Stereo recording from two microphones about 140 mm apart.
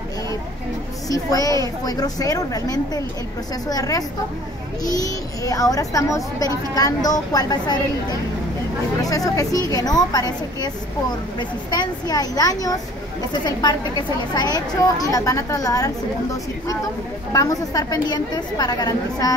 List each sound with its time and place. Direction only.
1.0 s speech: 25° left (ahead or behind)
9.0 s a woman's voice: 25° left (ahead or behind)
17.3 s speech: 25° left (ahead or behind)